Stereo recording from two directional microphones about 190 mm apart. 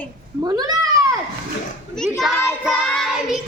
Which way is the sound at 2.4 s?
Centre (ahead or behind).